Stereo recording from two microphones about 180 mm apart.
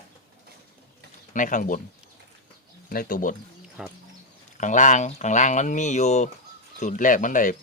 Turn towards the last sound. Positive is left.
turn(degrees=45)  # may be behind; listen again after turning